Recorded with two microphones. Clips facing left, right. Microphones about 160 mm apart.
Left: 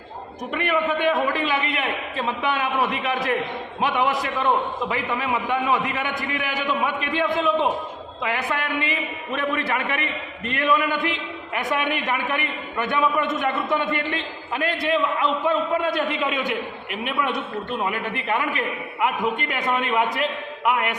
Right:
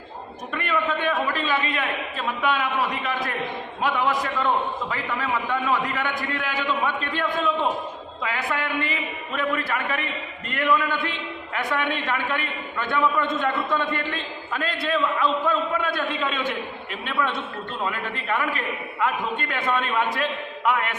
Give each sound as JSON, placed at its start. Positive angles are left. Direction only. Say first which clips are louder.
{"t": 0.5, "sound": "a man's voice", "louder": "left 3 dB", "side_deg": 20}
{"t": 10.5, "sound": "a man's voice", "louder": "left 1 dB", "side_deg": 20}